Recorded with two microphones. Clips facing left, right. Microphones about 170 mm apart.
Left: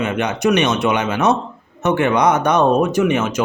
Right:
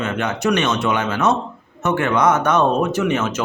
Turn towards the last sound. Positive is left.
turn(degrees=15)  # may be behind; listen again after turning